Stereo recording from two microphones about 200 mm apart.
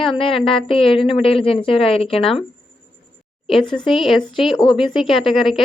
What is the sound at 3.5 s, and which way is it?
A woman's voice, centre (ahead or behind).